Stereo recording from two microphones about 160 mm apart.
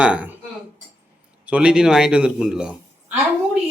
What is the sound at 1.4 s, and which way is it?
Speech, 5° right (ahead or behind).